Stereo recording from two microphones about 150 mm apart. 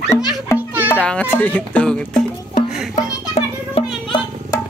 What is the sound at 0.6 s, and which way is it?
Music, 10° right (ahead or behind).